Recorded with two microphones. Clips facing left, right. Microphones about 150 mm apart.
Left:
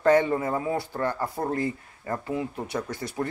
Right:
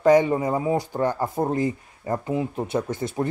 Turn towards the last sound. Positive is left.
turn(degrees=-20)  # may be behind; listen again after turning